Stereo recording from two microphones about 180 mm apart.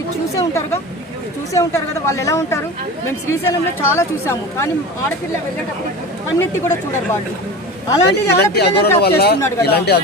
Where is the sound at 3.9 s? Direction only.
15° left (ahead or behind).